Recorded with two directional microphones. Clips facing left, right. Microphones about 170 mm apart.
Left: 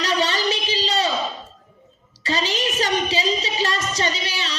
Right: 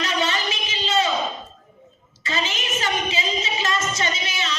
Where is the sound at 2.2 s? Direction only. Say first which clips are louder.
Left 4 dB; 35° left (ahead or behind).